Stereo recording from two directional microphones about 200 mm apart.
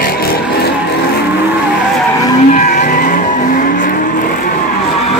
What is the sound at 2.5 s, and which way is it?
Vehicle, 40° left (ahead or behind).